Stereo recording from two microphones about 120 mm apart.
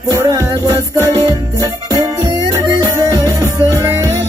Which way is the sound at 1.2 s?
30° right (ahead or behind).